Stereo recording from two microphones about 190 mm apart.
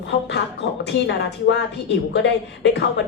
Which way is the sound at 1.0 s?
65° left (ahead or behind).